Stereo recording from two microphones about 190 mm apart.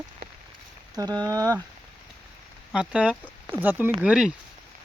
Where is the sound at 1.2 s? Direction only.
20° right (ahead or behind).